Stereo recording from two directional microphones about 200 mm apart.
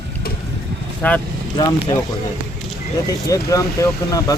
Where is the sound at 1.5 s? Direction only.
20° left (ahead or behind).